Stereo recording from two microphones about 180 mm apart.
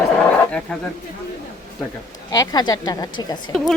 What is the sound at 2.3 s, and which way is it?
Speech, 20° left (ahead or behind).